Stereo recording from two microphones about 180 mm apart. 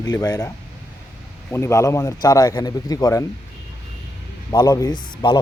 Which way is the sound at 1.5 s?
15° left (ahead or behind).